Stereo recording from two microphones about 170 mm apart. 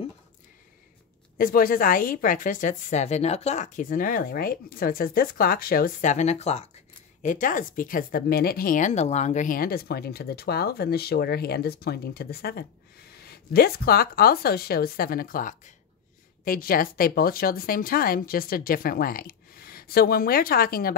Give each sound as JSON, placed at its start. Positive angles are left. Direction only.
{"t": 1.4, "sound": "speech", "side_deg": 55}
{"t": 7.2, "sound": "speech", "side_deg": 50}